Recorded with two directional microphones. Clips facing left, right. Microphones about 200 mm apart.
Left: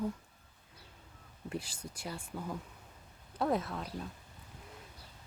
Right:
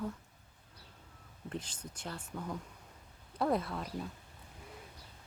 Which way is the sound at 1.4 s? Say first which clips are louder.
Left 2 dB; 10° left (ahead or behind).